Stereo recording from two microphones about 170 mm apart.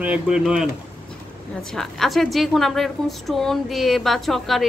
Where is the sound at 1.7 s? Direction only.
Centre (ahead or behind).